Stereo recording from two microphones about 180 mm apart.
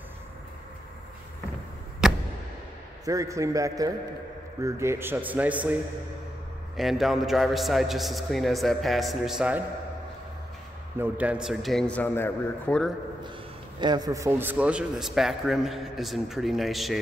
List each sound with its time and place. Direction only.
2.0 s a sound: 5° right (ahead or behind)
3.1 s speech: 15° right (ahead or behind)
6.8 s a man's voice: centre (ahead or behind)
11.0 s a man's voice: 10° right (ahead or behind); by 12.9 s 5° left (ahead or behind)
13.7 s a man's voice: 25° right (ahead or behind); by 17.0 s centre (ahead or behind)